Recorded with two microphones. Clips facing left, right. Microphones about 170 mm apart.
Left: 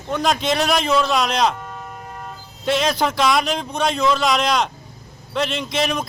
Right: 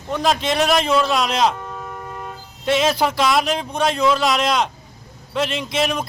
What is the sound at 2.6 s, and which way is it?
A man's voice, centre (ahead or behind).